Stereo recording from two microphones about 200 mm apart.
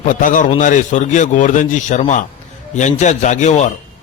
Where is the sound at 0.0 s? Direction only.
40° left (ahead or behind).